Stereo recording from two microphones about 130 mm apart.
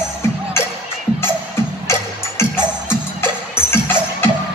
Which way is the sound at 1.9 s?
20° left (ahead or behind).